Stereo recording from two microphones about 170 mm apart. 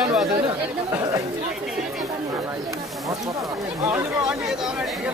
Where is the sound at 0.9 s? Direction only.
20° right (ahead or behind).